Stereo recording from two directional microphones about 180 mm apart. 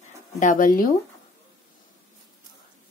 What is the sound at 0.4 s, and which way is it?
Speech, 45° left (ahead or behind).